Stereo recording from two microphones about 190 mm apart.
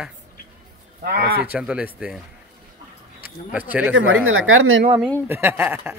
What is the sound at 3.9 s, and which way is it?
Speech, 90° right.